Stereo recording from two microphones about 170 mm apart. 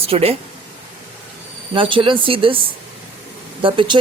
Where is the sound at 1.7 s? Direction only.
30° right (ahead or behind).